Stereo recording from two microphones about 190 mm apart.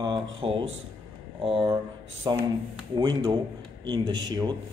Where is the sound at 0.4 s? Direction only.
30° right (ahead or behind).